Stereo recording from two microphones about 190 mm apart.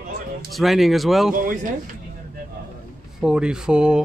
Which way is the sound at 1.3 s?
45° right (ahead or behind).